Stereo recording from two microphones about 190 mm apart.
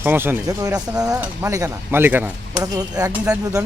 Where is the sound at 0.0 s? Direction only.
10° right (ahead or behind).